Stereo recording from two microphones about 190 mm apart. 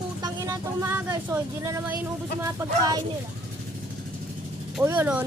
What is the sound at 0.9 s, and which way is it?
Speech, 10° right (ahead or behind).